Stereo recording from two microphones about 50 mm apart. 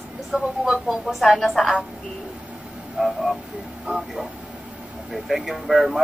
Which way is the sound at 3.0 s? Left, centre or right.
Centre.